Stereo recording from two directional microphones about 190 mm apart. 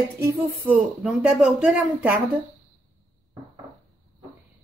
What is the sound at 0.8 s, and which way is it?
A woman's voice, 5° right (ahead or behind).